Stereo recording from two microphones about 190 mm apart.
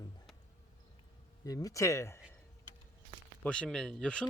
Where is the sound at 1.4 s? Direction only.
20° left (ahead or behind).